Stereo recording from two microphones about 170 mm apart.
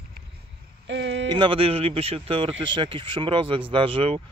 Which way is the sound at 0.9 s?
90° right.